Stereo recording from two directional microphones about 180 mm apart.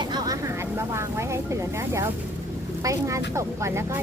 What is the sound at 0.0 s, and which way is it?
Speech, 20° right (ahead or behind).